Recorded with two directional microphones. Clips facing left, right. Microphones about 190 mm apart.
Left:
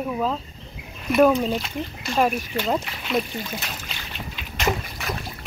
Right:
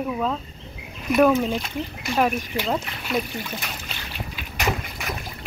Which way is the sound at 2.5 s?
15° right (ahead or behind).